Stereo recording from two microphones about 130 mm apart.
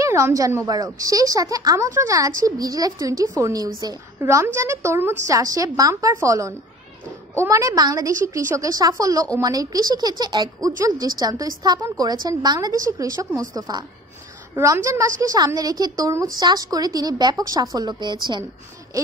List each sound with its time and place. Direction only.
0.0 s a woman's voice: 25° right (ahead or behind)